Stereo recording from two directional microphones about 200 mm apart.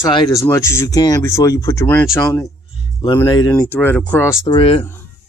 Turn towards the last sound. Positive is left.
turn(degrees=25)  # may be behind; listen again after turning